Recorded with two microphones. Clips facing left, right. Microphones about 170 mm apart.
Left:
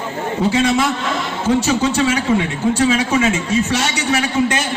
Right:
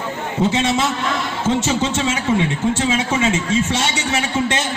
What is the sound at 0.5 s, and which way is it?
A man's voice, 25° right (ahead or behind).